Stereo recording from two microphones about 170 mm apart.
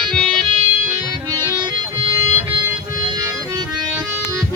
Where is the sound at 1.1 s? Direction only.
25° right (ahead or behind).